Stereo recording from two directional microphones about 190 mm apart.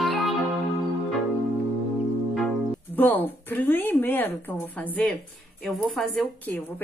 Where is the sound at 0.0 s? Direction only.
Centre (ahead or behind).